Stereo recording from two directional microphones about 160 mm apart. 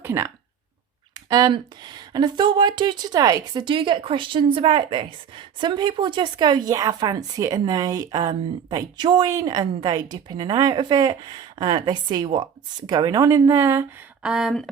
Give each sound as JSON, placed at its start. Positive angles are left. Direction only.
{"t": 0.0, "sound": "speech", "side_deg": -15}
{"t": 1.1, "sound": "speech", "side_deg": -25}
{"t": 14.2, "sound": "a sound", "side_deg": -5}